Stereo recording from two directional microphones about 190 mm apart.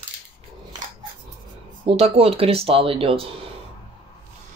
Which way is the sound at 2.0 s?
30° right (ahead or behind).